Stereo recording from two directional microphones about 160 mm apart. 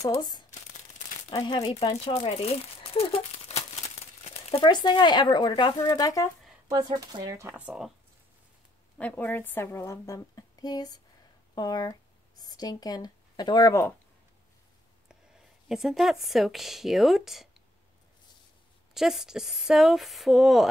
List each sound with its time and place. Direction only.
0.0 s speech: 20° left (ahead or behind)
6.7 s speech: 25° right (ahead or behind); by 7.9 s 5° right (ahead or behind)
8.9 s a woman's voice: 10° left (ahead or behind)
15.7 s speech: centre (ahead or behind)
18.9 s speech: centre (ahead or behind)